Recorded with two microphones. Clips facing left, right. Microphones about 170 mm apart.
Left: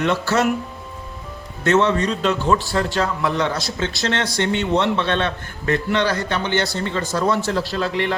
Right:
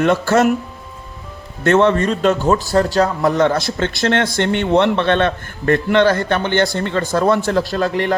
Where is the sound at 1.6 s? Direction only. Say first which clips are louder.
Right 4 dB; 55° right (ahead or behind).